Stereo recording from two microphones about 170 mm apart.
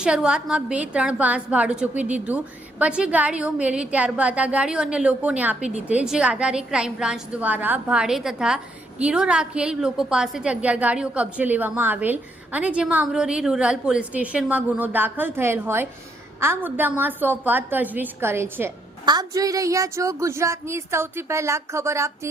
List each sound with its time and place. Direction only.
0.0 s a woman's voice: 5° right (ahead or behind)